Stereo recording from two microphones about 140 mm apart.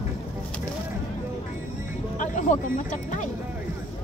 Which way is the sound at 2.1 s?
65° left (ahead or behind).